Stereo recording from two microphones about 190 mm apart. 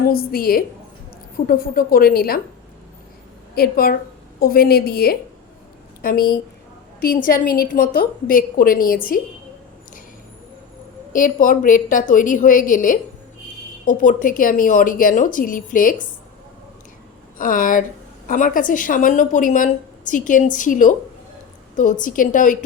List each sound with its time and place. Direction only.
0.0 s a woman's voice: 50° left (ahead or behind)
3.5 s a woman's voice: 50° left (ahead or behind)
11.1 s a woman's voice: 45° left (ahead or behind)
17.3 s a woman's voice: 45° left (ahead or behind)